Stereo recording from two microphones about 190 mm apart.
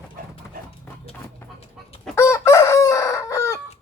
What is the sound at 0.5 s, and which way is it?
Dog, 45° right (ahead or behind).